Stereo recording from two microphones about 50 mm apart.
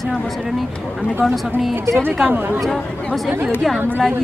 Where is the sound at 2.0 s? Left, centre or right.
Right.